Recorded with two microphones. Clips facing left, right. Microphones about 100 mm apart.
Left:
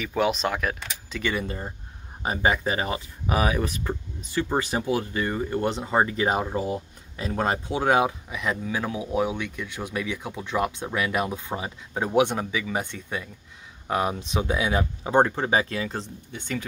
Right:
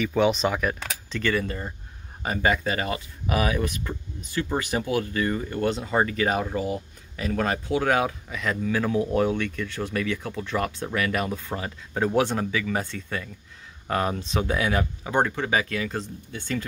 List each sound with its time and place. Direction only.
0.0 s speech: centre (ahead or behind)
1.2 s speech: 15° left (ahead or behind)